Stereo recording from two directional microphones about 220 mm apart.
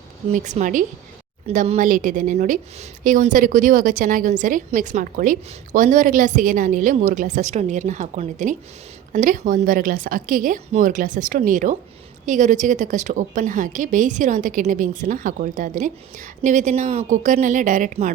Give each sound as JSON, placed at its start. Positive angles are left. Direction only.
{"t": 0.3, "sound": "a woman's voice", "side_deg": -30}